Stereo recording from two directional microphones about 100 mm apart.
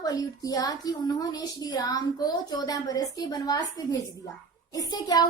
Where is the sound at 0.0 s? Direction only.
35° left (ahead or behind).